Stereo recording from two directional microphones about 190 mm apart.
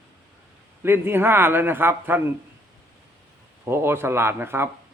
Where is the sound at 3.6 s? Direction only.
10° right (ahead or behind).